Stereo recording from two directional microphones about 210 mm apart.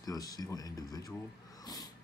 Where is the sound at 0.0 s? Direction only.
15° left (ahead or behind).